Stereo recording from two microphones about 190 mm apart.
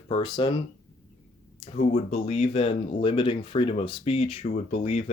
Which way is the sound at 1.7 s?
35° left (ahead or behind).